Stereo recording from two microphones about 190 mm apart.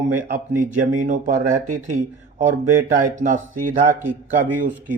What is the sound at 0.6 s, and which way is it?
Speech, 40° right (ahead or behind).